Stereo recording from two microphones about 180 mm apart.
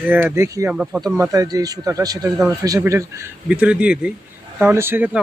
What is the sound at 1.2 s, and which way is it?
Speech, 20° right (ahead or behind).